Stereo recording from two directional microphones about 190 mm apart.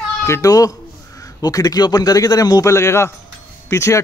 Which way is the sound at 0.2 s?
15° left (ahead or behind).